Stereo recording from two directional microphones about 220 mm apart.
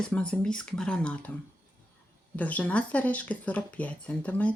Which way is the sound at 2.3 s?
5° left (ahead or behind).